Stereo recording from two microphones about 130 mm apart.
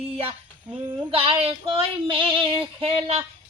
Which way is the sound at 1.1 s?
45° right (ahead or behind).